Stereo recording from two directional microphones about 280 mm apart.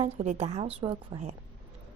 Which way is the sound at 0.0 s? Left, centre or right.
Right.